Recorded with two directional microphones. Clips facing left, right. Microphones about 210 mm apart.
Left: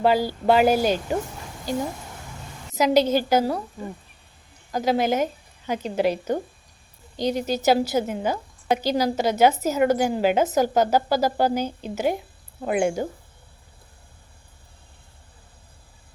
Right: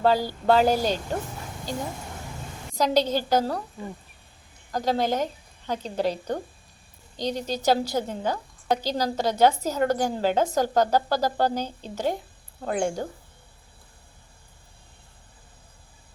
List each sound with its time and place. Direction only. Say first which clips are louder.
0.0 s a woman's voice: left 2 dB; 10° left (ahead or behind)
2.7 s a woman's voice: left 4 dB; 10° left (ahead or behind)
4.7 s a woman's voice: left 3 dB; 10° left (ahead or behind)